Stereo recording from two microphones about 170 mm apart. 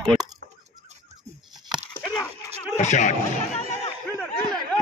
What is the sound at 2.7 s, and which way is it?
Speech, 45° left (ahead or behind).